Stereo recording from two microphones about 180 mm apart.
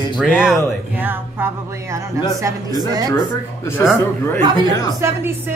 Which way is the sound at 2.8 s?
20° right (ahead or behind).